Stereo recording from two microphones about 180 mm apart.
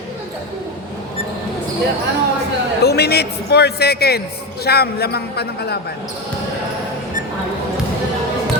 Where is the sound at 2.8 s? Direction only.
65° left (ahead or behind).